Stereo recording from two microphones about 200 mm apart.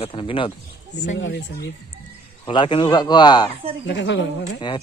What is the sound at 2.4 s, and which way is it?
Speech, 25° left (ahead or behind).